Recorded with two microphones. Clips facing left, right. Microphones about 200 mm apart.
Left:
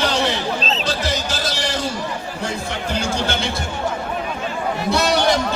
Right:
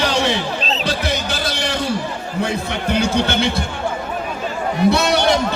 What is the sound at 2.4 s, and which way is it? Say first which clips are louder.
A man's voice: right 3 dB; 60° right (ahead or behind).